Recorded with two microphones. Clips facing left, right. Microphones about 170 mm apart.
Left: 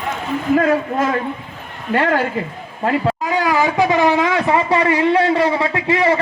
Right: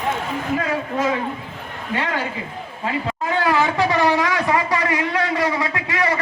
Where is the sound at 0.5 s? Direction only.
50° left (ahead or behind).